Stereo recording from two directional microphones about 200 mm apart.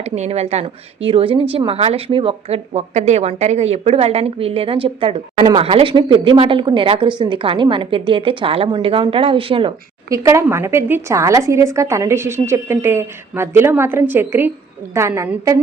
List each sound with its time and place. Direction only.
0.0 s a woman's voice: 35° right (ahead or behind); by 15.5 s 15° right (ahead or behind)